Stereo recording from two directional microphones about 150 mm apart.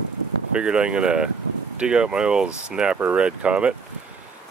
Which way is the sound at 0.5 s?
5° right (ahead or behind).